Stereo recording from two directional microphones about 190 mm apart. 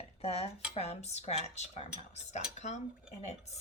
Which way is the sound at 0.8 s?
35° left (ahead or behind).